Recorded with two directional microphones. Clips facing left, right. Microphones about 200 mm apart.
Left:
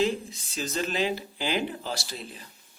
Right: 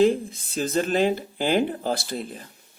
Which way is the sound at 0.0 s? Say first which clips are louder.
Right 7 dB; 50° right (ahead or behind).